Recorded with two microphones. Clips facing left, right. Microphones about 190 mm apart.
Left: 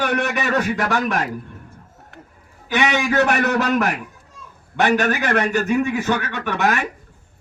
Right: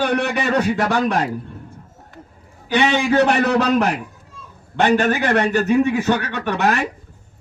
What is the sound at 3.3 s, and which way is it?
Speech, 30° right (ahead or behind).